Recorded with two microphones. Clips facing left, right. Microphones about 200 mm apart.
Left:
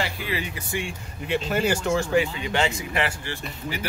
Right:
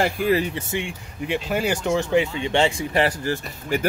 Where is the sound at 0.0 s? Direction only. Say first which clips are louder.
Right 9 dB; 45° right (ahead or behind).